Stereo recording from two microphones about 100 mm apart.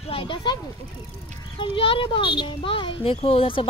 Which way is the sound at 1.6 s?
60° left (ahead or behind).